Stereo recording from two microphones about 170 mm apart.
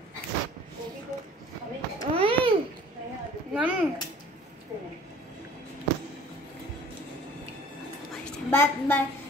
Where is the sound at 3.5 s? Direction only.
5° right (ahead or behind).